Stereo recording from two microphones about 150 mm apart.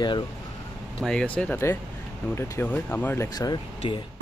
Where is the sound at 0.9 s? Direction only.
5° left (ahead or behind).